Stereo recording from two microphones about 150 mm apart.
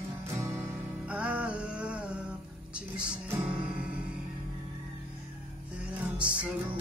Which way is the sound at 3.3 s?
10° right (ahead or behind).